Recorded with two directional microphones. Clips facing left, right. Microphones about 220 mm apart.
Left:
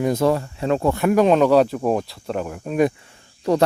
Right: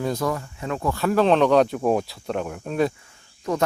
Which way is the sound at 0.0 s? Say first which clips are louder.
Left 6 dB; 25° left (ahead or behind).